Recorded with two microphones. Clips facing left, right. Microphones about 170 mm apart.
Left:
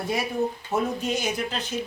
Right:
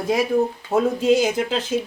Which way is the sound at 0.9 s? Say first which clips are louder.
Right 9 dB; 90° right.